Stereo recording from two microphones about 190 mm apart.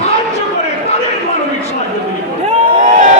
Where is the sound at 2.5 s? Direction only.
40° right (ahead or behind).